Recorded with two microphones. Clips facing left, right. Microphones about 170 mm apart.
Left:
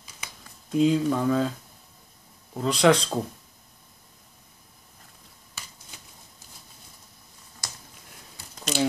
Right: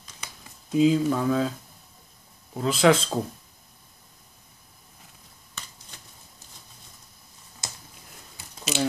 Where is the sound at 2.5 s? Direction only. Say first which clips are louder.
Even; centre (ahead or behind).